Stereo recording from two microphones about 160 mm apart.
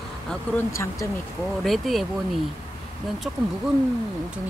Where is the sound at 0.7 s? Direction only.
20° left (ahead or behind).